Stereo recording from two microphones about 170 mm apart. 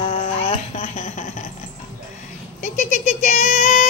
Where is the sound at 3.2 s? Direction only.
45° left (ahead or behind).